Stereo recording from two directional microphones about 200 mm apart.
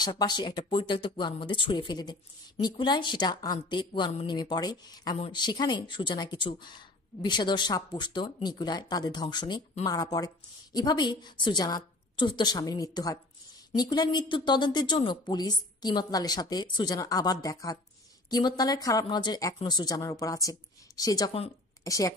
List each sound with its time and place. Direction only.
0.0 s a woman's voice: 20° left (ahead or behind)